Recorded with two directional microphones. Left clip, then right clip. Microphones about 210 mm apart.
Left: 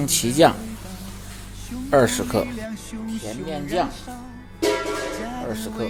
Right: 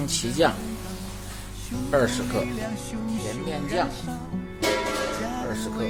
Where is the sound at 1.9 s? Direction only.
35° left (ahead or behind).